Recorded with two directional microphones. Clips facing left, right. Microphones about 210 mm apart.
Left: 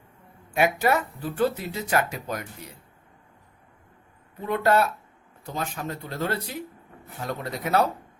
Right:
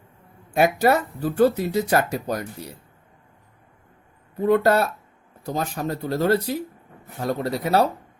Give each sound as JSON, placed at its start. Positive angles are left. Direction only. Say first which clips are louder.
{"t": 0.5, "sound": "speech", "louder": "right 4 dB", "side_deg": -40}
{"t": 4.4, "sound": "speech", "louder": "right 4 dB", "side_deg": -40}